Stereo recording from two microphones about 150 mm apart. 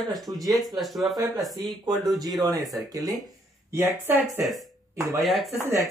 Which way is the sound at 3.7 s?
15° right (ahead or behind).